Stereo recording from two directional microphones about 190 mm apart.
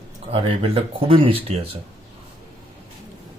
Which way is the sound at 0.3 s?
30° right (ahead or behind).